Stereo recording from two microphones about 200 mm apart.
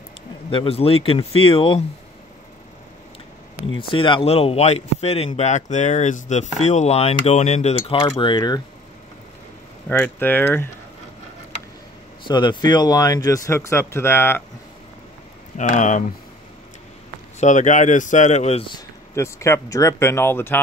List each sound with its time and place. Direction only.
0.5 s speech: 25° left (ahead or behind)
3.9 s speech: 25° left (ahead or behind)
9.8 s speech: 10° left (ahead or behind)
12.3 s speech: 20° left (ahead or behind)
15.5 s speech: 40° left (ahead or behind)
17.4 s speech: 40° left (ahead or behind)
19.1 s speech: 15° left (ahead or behind)